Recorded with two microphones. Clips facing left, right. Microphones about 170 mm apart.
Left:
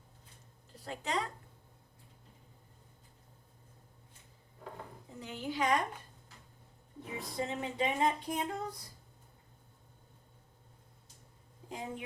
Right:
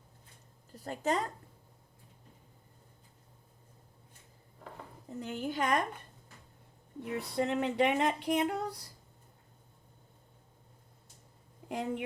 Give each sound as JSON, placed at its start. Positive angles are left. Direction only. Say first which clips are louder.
{"t": 0.7, "sound": "speech", "louder": "right 5 dB", "side_deg": -45}
{"t": 5.2, "sound": "a woman's voice", "louder": "right 1 dB", "side_deg": -50}
{"t": 7.0, "sound": "speech", "louder": "right 5 dB", "side_deg": -65}
{"t": 11.7, "sound": "speech", "louder": "right 6 dB", "side_deg": -65}